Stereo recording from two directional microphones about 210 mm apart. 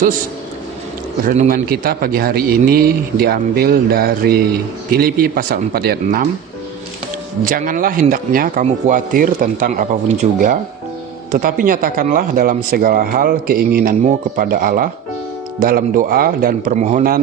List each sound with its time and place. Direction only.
1.2 s speech: 40° right (ahead or behind)
7.4 s speech: 40° right (ahead or behind)